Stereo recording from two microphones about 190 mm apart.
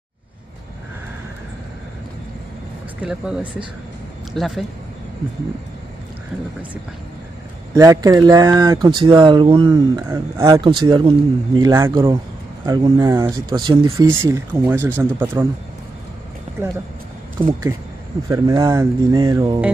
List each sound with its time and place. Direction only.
3.0 s speech: 5° right (ahead or behind)
7.7 s speech: 20° right (ahead or behind)
10.6 s speech: 25° right (ahead or behind)
18.3 s speech: 20° right (ahead or behind)